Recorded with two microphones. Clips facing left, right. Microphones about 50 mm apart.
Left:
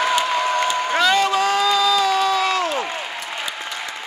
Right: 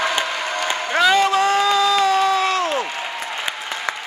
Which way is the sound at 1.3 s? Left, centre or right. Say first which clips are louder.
Right 1 dB; right.